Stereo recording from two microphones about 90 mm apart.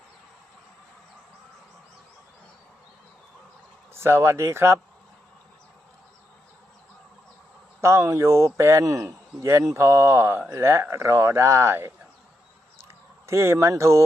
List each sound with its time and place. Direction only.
3.9 s speech: 25° right (ahead or behind)
7.8 s speech: 30° right (ahead or behind)
13.2 s speech: 30° right (ahead or behind)